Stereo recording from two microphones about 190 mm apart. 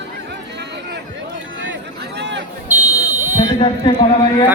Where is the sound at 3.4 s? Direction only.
30° left (ahead or behind).